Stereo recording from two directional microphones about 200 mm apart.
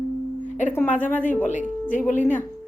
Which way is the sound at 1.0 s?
10° left (ahead or behind).